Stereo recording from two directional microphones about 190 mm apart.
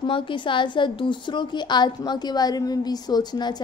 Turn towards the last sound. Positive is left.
turn(degrees=20)  # may be behind; listen again after turning